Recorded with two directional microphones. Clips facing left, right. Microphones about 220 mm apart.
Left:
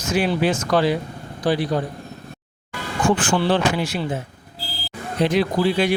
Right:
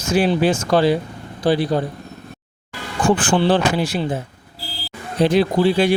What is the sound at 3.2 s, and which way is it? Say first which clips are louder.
Speech: right 3 dB; 30° right (ahead or behind).